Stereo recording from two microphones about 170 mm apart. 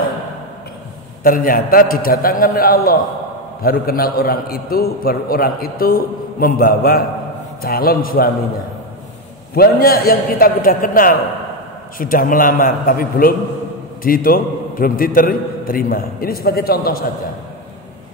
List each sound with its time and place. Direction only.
1.2 s a man's voice: 55° left (ahead or behind)
9.6 s a man's voice: 60° left (ahead or behind)